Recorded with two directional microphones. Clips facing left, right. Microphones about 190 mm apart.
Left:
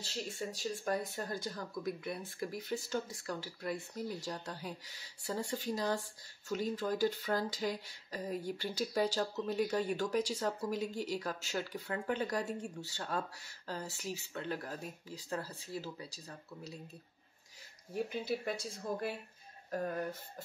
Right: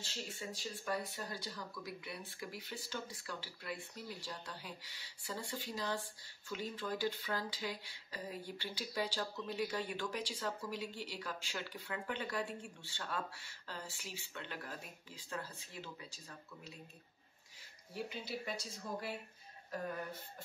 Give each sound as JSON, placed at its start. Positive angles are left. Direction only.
{"t": 0.0, "sound": "speech", "side_deg": 40}
{"t": 17.9, "sound": "speech", "side_deg": 50}